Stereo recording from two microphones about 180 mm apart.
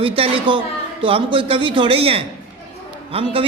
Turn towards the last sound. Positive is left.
turn(degrees=-30)  # may be behind; listen again after turning